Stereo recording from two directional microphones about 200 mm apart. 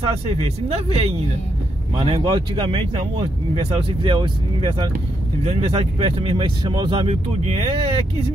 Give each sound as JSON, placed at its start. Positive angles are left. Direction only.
{"t": 0.4, "sound": "a man's voice", "side_deg": -30}